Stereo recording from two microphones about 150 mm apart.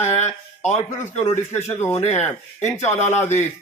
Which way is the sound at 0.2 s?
50° left (ahead or behind).